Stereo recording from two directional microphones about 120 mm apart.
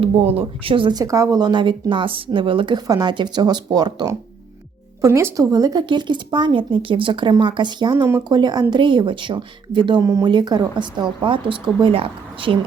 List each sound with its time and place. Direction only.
0.0 s speech: 55° right (ahead or behind)
2.8 s speech: 30° right (ahead or behind)
10.0 s speech: 25° right (ahead or behind)
10.2 s speech: 35° right (ahead or behind)